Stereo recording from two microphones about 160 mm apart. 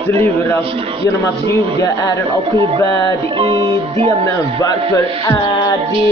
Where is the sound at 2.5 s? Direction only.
30° right (ahead or behind).